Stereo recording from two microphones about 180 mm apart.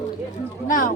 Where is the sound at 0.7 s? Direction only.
50° left (ahead or behind).